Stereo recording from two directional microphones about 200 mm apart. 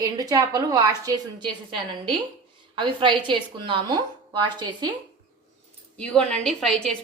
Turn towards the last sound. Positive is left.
turn(degrees=0)  # may be behind; listen again after turning